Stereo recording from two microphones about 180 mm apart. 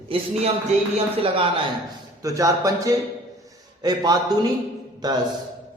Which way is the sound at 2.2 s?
20° right (ahead or behind).